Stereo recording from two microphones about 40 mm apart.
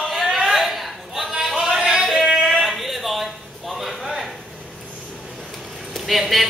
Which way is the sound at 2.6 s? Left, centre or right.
Centre.